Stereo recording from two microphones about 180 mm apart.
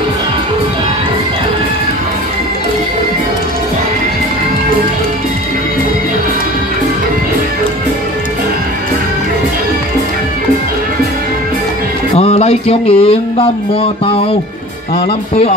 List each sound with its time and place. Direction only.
12.2 s music: 35° left (ahead or behind)